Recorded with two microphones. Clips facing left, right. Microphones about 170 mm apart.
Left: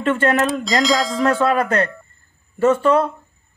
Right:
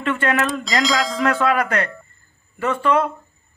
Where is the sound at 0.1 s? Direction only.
35° left (ahead or behind).